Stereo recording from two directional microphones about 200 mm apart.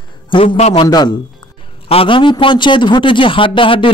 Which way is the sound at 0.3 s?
30° left (ahead or behind).